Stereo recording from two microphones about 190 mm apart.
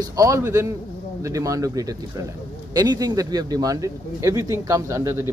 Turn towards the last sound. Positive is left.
turn(degrees=-15)  # may be behind; listen again after turning